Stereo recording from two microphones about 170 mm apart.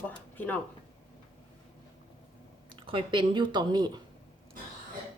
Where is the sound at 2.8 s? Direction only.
30° right (ahead or behind).